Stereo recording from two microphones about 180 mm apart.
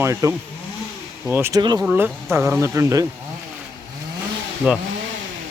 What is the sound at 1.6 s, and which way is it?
Speech, 25° right (ahead or behind).